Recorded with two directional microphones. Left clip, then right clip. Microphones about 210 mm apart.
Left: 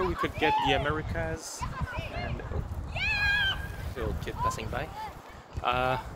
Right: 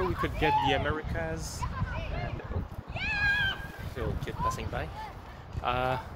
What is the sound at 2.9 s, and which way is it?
Cat, 45° left (ahead or behind).